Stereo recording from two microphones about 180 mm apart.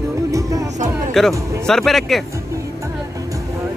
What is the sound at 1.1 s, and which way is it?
Speech, centre (ahead or behind).